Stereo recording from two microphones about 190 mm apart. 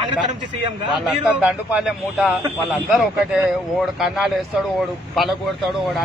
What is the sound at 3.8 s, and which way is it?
Speech, centre (ahead or behind).